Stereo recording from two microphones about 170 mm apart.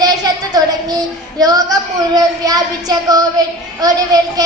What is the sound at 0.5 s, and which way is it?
A woman's voice, 20° right (ahead or behind).